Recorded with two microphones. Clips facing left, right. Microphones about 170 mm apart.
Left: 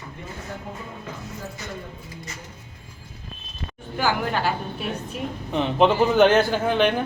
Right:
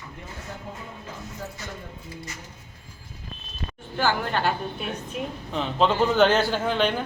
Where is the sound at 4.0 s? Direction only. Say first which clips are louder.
Left 1 dB; 10° left (ahead or behind).